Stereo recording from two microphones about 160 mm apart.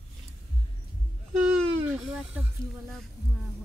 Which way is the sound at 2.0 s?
5° right (ahead or behind).